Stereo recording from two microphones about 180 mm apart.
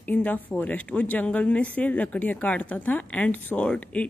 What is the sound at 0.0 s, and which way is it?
Speech, 10° left (ahead or behind).